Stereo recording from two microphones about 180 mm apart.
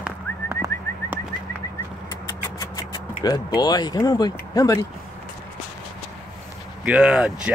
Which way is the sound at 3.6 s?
20° left (ahead or behind).